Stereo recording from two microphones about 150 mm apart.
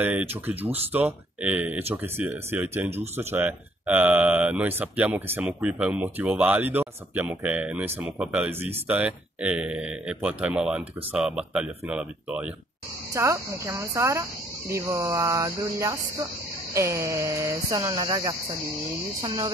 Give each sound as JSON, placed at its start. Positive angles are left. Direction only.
{"t": 0.0, "sound": "speech", "side_deg": -15}
{"t": 13.1, "sound": "speech", "side_deg": -20}